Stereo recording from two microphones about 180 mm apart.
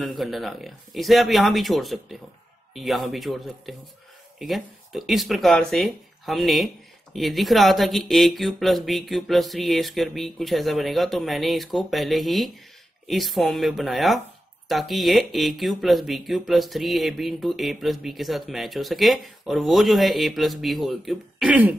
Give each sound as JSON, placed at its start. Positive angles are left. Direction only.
{"t": 0.2, "sound": "speech", "side_deg": 0}